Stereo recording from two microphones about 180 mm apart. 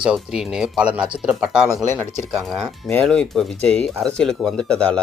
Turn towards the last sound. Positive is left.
turn(degrees=5)  # may be behind; listen again after turning